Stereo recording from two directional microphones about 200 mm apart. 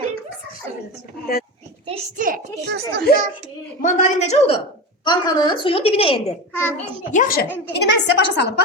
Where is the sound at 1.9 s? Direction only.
40° right (ahead or behind).